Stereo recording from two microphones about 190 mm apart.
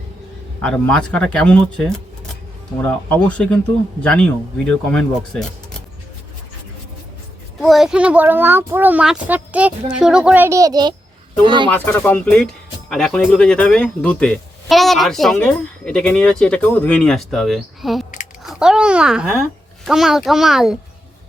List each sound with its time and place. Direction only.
0.6 s speech: 5° left (ahead or behind)
7.6 s speech: centre (ahead or behind); by 11.7 s 25° right (ahead or behind)
11.7 s speech: 10° left (ahead or behind)